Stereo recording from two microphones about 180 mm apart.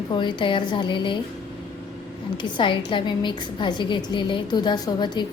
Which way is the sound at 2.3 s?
25° left (ahead or behind).